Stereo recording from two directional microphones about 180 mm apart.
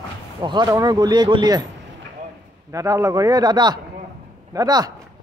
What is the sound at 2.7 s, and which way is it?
A man's voice, 20° right (ahead or behind).